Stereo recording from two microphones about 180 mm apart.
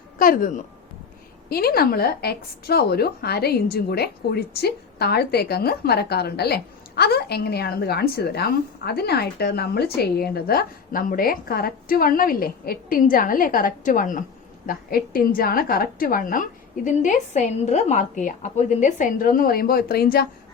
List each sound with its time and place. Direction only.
0.2 s a woman's voice: 50° left (ahead or behind)